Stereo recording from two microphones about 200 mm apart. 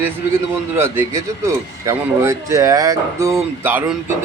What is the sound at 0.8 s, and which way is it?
A man's voice, 10° right (ahead or behind).